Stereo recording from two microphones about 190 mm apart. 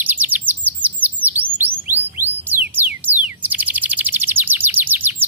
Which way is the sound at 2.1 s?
10° right (ahead or behind).